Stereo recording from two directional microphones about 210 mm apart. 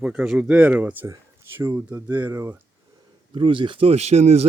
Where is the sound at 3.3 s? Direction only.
25° right (ahead or behind).